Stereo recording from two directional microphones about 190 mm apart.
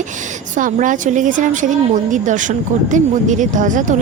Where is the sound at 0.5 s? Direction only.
40° right (ahead or behind).